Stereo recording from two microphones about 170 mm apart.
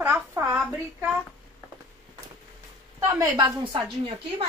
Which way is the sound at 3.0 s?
25° right (ahead or behind).